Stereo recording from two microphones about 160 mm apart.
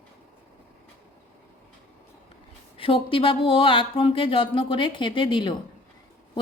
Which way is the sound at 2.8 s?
35° left (ahead or behind).